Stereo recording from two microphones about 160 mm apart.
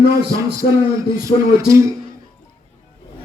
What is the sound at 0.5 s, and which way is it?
A man's voice, 20° right (ahead or behind).